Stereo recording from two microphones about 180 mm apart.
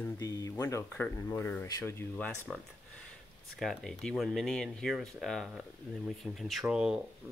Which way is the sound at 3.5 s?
Centre (ahead or behind).